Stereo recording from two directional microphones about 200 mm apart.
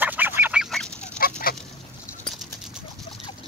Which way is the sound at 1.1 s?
50° left (ahead or behind).